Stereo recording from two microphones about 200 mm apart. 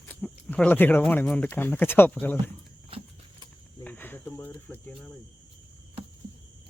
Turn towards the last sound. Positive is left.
turn(degrees=10)  # may be behind; listen again after turning